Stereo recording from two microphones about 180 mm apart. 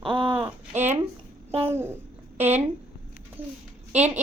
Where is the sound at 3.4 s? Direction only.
10° right (ahead or behind).